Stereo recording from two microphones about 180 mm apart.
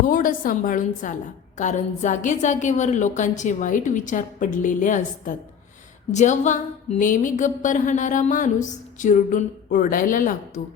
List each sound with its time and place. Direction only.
0.0 s a woman's voice: 50° left (ahead or behind)